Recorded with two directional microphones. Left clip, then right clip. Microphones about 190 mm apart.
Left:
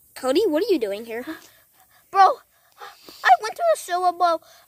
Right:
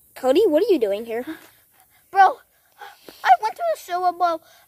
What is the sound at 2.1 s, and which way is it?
Gasp, 45° left (ahead or behind).